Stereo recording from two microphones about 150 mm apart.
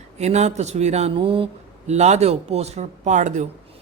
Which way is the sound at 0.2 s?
45° right (ahead or behind).